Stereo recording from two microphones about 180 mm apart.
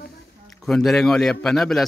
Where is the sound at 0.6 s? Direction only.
Centre (ahead or behind).